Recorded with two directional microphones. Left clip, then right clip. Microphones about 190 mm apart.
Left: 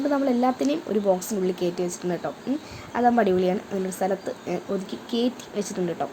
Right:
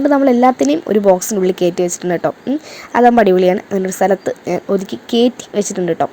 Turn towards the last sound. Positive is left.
turn(degrees=-40)  # may be behind; listen again after turning